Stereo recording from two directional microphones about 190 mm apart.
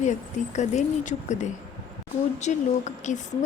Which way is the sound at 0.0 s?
40° left (ahead or behind).